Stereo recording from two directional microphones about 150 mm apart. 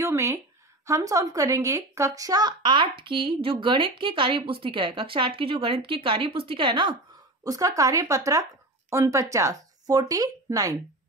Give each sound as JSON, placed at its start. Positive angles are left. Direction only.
{"t": 0.0, "sound": "speech", "side_deg": -20}